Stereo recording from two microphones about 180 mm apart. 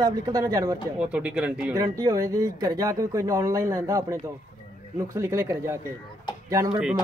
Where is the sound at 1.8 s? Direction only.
20° right (ahead or behind).